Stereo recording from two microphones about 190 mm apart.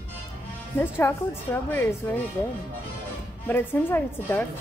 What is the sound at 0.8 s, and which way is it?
A woman's voice, 10° left (ahead or behind).